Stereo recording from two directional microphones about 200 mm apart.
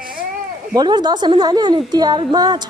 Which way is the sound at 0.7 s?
20° right (ahead or behind).